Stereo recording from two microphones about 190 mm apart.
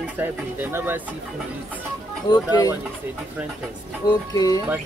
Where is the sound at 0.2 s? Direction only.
10° right (ahead or behind).